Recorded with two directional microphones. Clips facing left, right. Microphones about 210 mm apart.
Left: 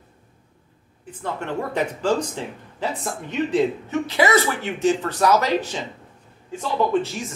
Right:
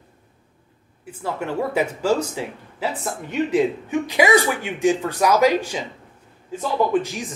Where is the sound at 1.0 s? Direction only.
10° right (ahead or behind).